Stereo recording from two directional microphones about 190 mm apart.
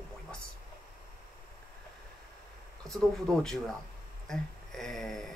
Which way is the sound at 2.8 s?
Centre (ahead or behind).